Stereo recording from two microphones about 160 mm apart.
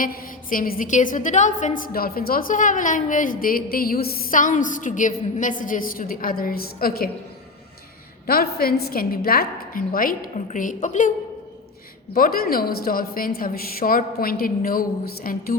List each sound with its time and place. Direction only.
0.0 s a woman's voice: 65° left (ahead or behind)
8.3 s a woman's voice: 70° left (ahead or behind); by 11.1 s 50° left (ahead or behind)
12.1 s a woman's voice: 65° left (ahead or behind)